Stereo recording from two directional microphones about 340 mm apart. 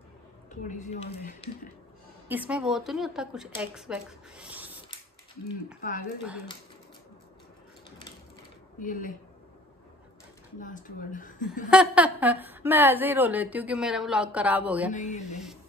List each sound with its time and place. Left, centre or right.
0.7 s speech: left
2.2 s a woman's voice: centre
5.8 s speech: left
8.7 s speech: left
10.6 s speech: left
11.7 s a woman's voice: centre
14.9 s speech: left